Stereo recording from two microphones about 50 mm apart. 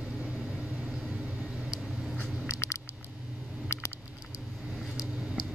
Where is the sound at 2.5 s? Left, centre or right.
Left.